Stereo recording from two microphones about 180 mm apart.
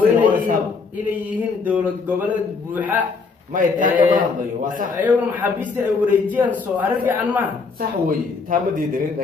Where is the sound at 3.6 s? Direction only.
45° right (ahead or behind).